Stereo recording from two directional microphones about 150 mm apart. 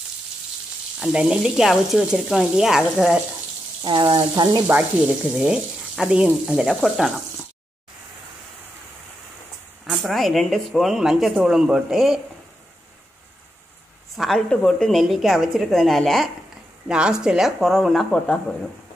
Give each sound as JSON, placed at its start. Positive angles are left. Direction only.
{"t": 0.9, "sound": "speech", "side_deg": -5}
{"t": 3.8, "sound": "speech", "side_deg": -30}
{"t": 4.6, "sound": "speech", "side_deg": -10}
{"t": 9.8, "sound": "speech", "side_deg": 0}
{"t": 14.1, "sound": "a woman's voice", "side_deg": 0}